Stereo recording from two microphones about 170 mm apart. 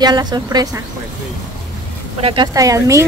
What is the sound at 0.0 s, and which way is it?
Speech, 25° right (ahead or behind).